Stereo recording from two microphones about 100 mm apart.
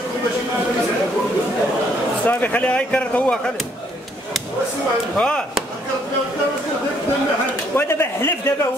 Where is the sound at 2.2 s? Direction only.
15° left (ahead or behind).